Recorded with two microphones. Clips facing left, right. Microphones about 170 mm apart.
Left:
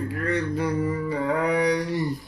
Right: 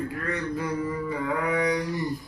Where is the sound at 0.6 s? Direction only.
30° left (ahead or behind).